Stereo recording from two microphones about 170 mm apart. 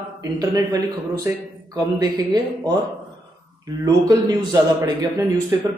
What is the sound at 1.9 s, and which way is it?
Speech, 20° right (ahead or behind).